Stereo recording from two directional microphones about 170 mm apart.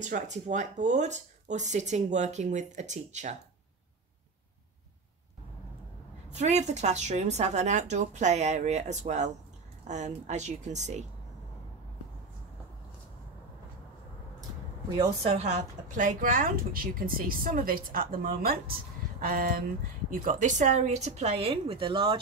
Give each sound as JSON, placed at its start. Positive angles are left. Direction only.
{"t": 0.0, "sound": "speech", "side_deg": -45}
{"t": 6.3, "sound": "speech", "side_deg": -40}
{"t": 15.2, "sound": "speech", "side_deg": -40}